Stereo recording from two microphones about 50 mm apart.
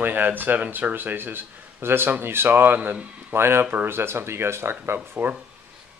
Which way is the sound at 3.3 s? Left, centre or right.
Right.